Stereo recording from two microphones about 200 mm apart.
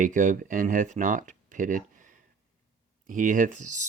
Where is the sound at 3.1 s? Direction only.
40° right (ahead or behind).